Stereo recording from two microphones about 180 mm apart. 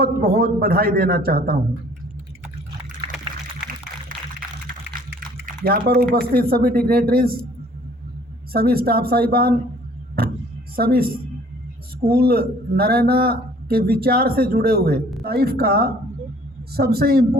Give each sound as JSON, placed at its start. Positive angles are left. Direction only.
{"t": 0.0, "sound": "a man's voice", "side_deg": -55}
{"t": 5.6, "sound": "a man's voice", "side_deg": -55}
{"t": 8.5, "sound": "a man's voice", "side_deg": -55}
{"t": 10.8, "sound": "a man's voice", "side_deg": -55}